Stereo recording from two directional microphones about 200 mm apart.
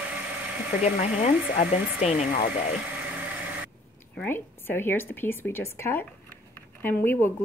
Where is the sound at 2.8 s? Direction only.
5° right (ahead or behind).